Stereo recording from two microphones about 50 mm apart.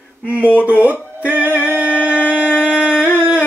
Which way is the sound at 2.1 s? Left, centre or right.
Left.